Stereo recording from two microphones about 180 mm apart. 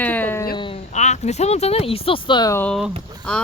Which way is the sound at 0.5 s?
30° left (ahead or behind).